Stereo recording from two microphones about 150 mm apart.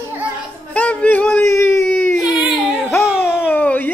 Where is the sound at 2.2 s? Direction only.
5° right (ahead or behind); by 3.9 s 10° left (ahead or behind).